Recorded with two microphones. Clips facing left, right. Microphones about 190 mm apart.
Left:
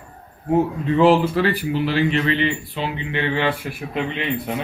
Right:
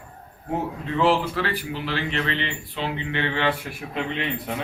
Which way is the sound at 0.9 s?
15° left (ahead or behind).